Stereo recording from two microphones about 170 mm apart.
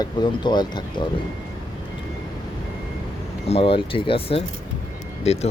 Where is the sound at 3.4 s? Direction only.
35° left (ahead or behind).